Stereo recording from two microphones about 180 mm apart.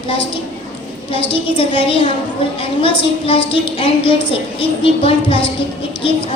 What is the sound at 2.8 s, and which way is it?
A woman's voice, 30° left (ahead or behind).